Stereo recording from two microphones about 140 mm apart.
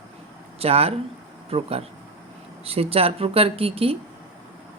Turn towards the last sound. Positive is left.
turn(degrees=-45)  # may be behind; listen again after turning